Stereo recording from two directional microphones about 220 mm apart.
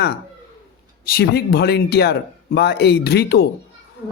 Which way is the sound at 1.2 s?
50° left (ahead or behind).